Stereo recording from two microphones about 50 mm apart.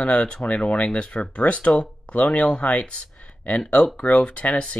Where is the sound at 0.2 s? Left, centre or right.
Centre.